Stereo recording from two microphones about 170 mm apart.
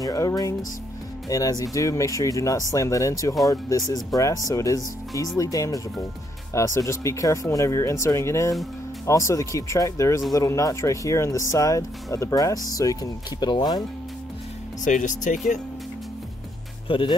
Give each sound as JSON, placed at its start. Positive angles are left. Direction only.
{"t": 0.0, "sound": "speech", "side_deg": 20}
{"t": 14.9, "sound": "speech", "side_deg": 50}
{"t": 16.8, "sound": "speech", "side_deg": 30}